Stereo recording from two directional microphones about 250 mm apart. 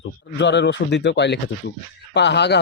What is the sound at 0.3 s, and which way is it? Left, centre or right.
A man's voice, left.